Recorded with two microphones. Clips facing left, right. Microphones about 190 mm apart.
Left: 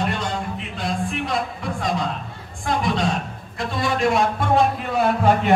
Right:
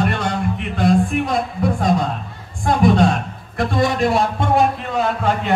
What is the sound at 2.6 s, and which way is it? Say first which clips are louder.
A man's voice: right 7 dB; 50° right (ahead or behind).